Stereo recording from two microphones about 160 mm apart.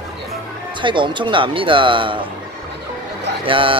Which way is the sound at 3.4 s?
35° right (ahead or behind).